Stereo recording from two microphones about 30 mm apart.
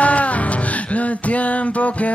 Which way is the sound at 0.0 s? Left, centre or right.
Left.